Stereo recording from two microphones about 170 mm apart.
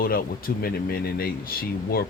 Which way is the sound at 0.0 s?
60° left (ahead or behind).